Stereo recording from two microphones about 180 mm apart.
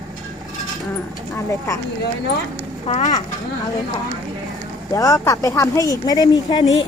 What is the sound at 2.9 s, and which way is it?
Speech, 40° left (ahead or behind).